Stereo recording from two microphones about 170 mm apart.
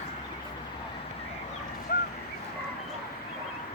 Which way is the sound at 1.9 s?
60° left (ahead or behind).